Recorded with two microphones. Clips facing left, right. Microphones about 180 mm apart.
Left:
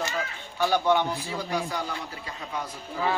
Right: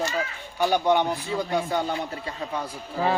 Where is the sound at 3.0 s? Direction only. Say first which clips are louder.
Right 3 dB; 35° right (ahead or behind).